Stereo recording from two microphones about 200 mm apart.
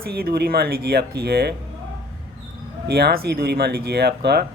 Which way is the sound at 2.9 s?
50° right (ahead or behind).